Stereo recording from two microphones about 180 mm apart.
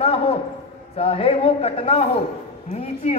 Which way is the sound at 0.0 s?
30° left (ahead or behind).